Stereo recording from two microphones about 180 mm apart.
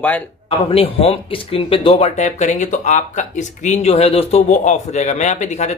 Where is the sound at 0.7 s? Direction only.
30° left (ahead or behind).